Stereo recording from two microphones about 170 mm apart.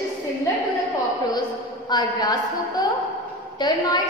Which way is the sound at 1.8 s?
25° left (ahead or behind).